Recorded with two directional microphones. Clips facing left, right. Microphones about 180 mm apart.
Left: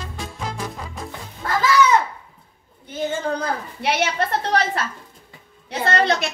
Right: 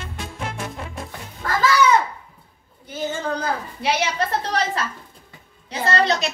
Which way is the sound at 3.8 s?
60° left (ahead or behind).